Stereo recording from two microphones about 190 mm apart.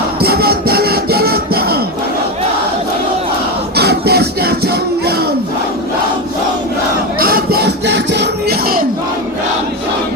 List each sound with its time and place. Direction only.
0.2 s printer: 55° right (ahead or behind)
3.8 s music: 60° right (ahead or behind)
7.2 s music: 50° right (ahead or behind)